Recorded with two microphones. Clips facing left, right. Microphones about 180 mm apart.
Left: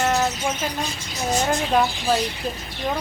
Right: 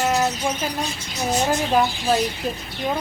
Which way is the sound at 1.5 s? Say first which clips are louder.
Right 1 dB; 5° right (ahead or behind).